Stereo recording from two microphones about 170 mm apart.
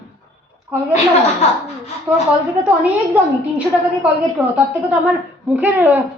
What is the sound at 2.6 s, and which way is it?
A woman's voice, 10° right (ahead or behind).